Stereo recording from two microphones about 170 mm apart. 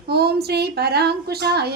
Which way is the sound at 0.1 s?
70° right (ahead or behind).